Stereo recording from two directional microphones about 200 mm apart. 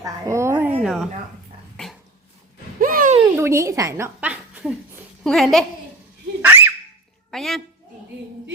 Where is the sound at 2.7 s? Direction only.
45° right (ahead or behind).